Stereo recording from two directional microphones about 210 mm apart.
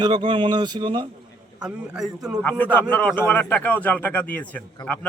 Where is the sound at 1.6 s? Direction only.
5° right (ahead or behind).